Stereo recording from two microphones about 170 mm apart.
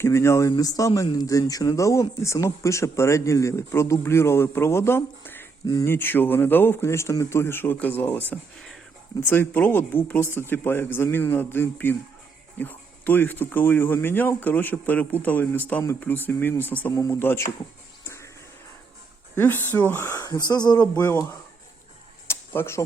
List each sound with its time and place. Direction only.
0.0 s speech: 15° left (ahead or behind)
18.0 s music: 15° left (ahead or behind)
19.4 s speech: 10° left (ahead or behind)
22.3 s a sound: 15° left (ahead or behind)